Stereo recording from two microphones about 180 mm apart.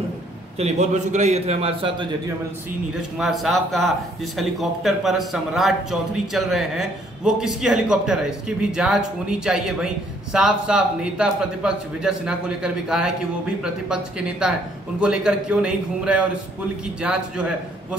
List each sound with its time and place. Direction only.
0.6 s a man's voice: 40° right (ahead or behind)
3.2 s a man's voice: centre (ahead or behind)